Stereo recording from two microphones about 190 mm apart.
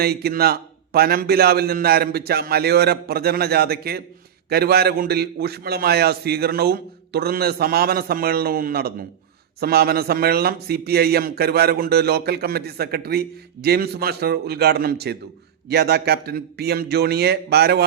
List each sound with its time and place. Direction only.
0.0 s a man's voice: 55° right (ahead or behind)